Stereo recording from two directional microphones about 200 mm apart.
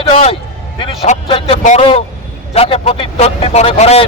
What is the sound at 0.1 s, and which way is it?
Speech, 30° left (ahead or behind).